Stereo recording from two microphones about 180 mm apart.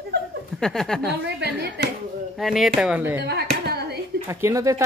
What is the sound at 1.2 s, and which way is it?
Speech, 65° right (ahead or behind).